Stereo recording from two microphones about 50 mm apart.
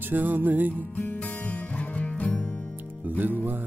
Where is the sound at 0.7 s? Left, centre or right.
Left.